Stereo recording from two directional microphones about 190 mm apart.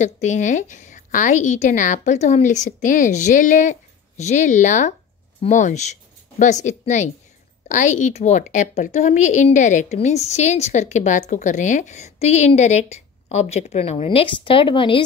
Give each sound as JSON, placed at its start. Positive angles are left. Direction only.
{"t": 0.0, "sound": "a woman's voice", "side_deg": 40}